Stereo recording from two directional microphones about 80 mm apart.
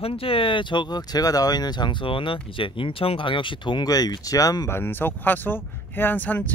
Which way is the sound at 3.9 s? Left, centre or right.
Left.